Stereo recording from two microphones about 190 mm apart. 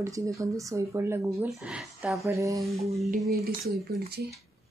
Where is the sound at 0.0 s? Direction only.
15° right (ahead or behind).